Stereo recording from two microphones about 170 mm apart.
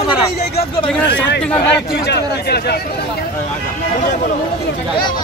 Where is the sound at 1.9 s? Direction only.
80° left.